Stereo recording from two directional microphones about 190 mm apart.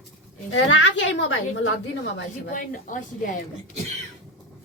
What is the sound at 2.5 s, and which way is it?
Speech, 45° left (ahead or behind).